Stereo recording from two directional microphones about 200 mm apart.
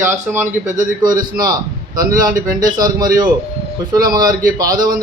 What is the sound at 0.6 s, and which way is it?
A man's voice, 40° right (ahead or behind).